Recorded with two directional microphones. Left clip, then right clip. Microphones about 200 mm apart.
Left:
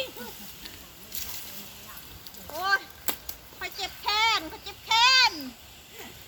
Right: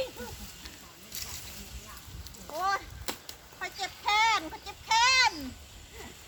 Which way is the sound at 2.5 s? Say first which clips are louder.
Left 4 dB; 25° right (ahead or behind).